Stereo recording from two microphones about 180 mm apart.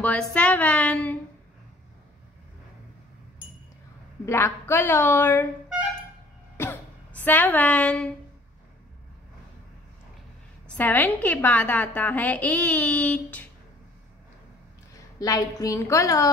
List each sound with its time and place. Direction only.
0.0 s a woman's voice: 5° left (ahead or behind)
4.3 s a woman's voice: 15° left (ahead or behind)
6.5 s a sound: 10° left (ahead or behind)
10.8 s a woman's voice: 10° left (ahead or behind)
15.1 s a woman's voice: 20° left (ahead or behind)